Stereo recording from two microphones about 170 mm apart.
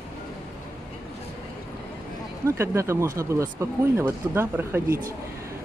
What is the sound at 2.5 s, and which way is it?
Speech, 15° right (ahead or behind).